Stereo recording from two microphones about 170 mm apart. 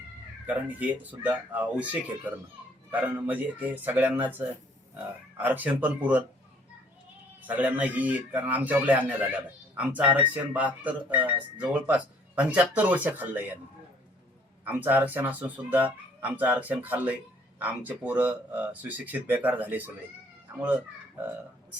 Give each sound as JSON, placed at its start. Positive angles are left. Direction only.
{"t": 0.4, "sound": "speech", "side_deg": -10}
{"t": 5.4, "sound": "speech", "side_deg": -10}
{"t": 7.4, "sound": "speech", "side_deg": -10}
{"t": 14.6, "sound": "speech", "side_deg": -10}